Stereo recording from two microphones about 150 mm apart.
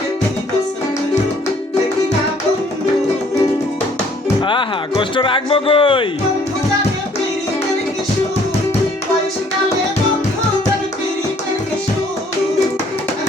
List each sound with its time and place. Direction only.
4.4 s music: 35° left (ahead or behind)